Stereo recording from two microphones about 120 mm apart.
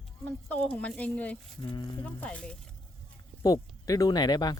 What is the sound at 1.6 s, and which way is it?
Speech, 40° left (ahead or behind).